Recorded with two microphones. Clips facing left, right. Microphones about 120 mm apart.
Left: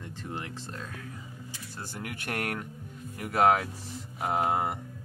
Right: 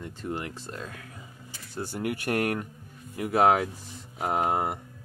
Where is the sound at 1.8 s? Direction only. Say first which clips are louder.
Right 9 dB; 15° right (ahead or behind).